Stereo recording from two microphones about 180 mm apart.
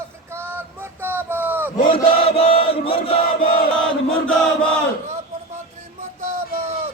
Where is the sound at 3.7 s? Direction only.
5° left (ahead or behind).